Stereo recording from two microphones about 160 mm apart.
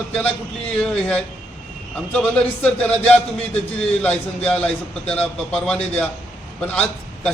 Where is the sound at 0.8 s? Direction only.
5° left (ahead or behind).